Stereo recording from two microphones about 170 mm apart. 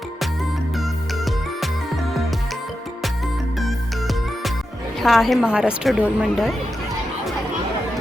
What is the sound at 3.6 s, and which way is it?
Music, centre (ahead or behind).